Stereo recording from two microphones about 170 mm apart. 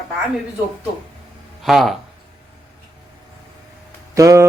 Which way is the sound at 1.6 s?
Centre (ahead or behind).